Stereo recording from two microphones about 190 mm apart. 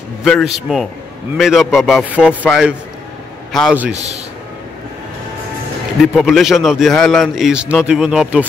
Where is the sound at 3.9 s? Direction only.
35° right (ahead or behind).